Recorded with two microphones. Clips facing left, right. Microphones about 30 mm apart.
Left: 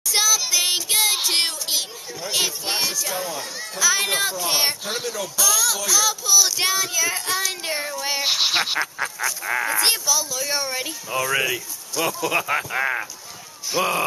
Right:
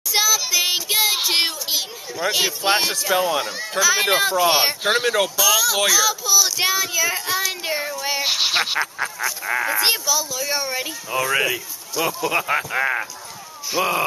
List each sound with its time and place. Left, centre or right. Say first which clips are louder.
0.1 s child singing: right 1 dB; centre
2.6 s speech: right 6 dB; right
3.2 s speech: right 8 dB; right
4.0 s speech: right 6 dB; centre
5.0 s speech: right 9 dB; right
5.4 s speech: right 1 dB; centre